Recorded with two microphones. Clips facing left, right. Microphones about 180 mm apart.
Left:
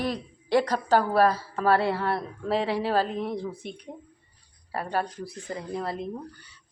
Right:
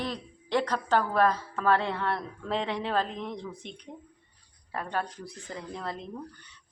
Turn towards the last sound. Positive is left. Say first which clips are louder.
# left 5 dB
turn(degrees=10)  # may be behind; listen again after turning